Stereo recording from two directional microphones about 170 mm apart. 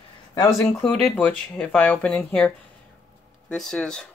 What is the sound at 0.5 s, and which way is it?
Speech, 5° left (ahead or behind).